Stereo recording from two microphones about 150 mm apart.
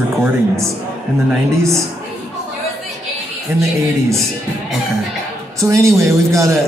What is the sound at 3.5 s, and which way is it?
Speech, 15° right (ahead or behind).